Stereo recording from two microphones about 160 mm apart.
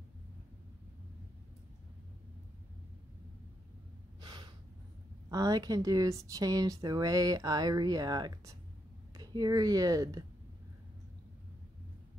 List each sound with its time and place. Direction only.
4.2 s gasp: 30° right (ahead or behind)
5.3 s speech: 25° right (ahead or behind)